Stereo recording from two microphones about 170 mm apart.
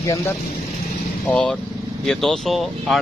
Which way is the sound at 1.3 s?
5° left (ahead or behind).